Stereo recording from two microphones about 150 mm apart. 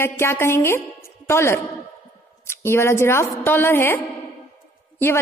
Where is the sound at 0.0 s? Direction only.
15° left (ahead or behind).